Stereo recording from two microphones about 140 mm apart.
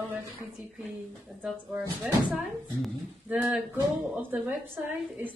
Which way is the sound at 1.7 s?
15° right (ahead or behind).